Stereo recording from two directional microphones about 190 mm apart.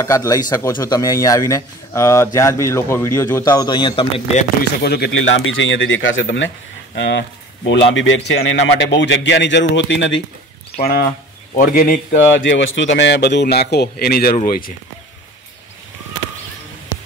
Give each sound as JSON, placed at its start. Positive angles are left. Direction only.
{"t": 0.0, "sound": "speech", "side_deg": 15}
{"t": 4.8, "sound": "speech", "side_deg": 55}
{"t": 5.1, "sound": "speech", "side_deg": 80}
{"t": 7.0, "sound": "speech", "side_deg": 65}
{"t": 10.8, "sound": "a man's voice", "side_deg": 55}
{"t": 12.4, "sound": "speech", "side_deg": 75}